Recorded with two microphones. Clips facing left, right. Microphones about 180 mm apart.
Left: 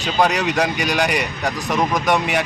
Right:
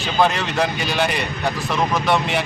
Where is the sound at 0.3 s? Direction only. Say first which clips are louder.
Left 2 dB; 15° left (ahead or behind).